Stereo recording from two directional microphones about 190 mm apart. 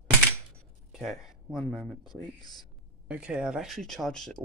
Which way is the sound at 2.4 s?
20° left (ahead or behind).